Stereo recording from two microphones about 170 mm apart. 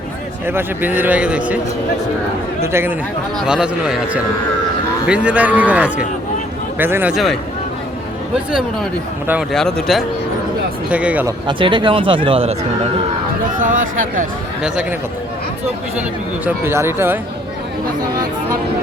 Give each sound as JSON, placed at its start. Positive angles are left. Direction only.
{"t": 0.4, "sound": "a man's voice", "side_deg": -10}
{"t": 2.6, "sound": "a man's voice", "side_deg": -15}
{"t": 7.1, "sound": "a man's voice", "side_deg": 0}
{"t": 9.5, "sound": "a man's voice", "side_deg": 0}
{"t": 11.4, "sound": "speech", "side_deg": -30}
{"t": 13.6, "sound": "speech", "side_deg": -50}
{"t": 16.6, "sound": "a man's voice", "side_deg": -15}